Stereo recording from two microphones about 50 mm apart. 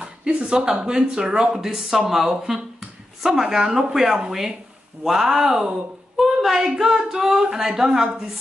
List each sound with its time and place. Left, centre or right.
0.0 s speech: centre